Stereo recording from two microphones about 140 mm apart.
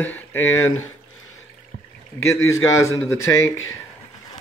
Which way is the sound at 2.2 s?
20° left (ahead or behind).